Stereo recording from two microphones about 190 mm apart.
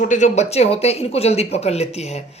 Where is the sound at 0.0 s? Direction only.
40° left (ahead or behind).